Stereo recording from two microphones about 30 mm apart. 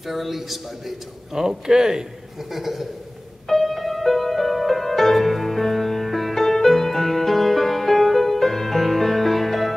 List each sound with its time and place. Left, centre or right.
0.0 s a man's voice: centre
1.4 s speech: centre
2.5 s speech: centre
3.4 s music: centre